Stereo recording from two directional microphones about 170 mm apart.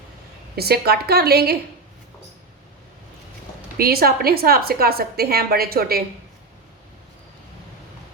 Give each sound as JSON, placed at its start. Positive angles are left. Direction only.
{"t": 0.5, "sound": "a woman's voice", "side_deg": -70}
{"t": 3.8, "sound": "a woman's voice", "side_deg": -60}